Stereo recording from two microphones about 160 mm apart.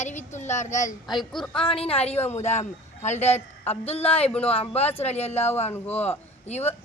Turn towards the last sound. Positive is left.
turn(degrees=40)  # may be behind; listen again after turning